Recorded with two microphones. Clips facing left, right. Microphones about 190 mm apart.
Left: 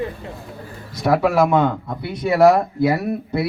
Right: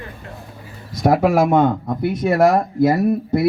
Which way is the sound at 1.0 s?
50° right (ahead or behind).